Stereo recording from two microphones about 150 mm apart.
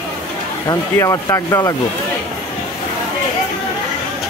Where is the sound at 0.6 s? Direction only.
20° left (ahead or behind).